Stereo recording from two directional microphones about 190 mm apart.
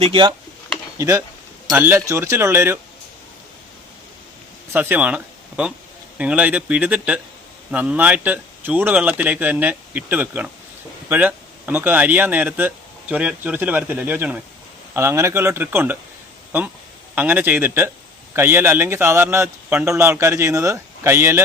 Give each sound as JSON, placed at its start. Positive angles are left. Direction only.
{"t": 0.0, "sound": "speech", "side_deg": -30}
{"t": 0.9, "sound": "speech", "side_deg": -15}
{"t": 4.7, "sound": "speech", "side_deg": -10}
{"t": 17.2, "sound": "speech", "side_deg": -10}